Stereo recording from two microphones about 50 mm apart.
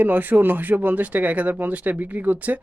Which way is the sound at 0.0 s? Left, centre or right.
Right.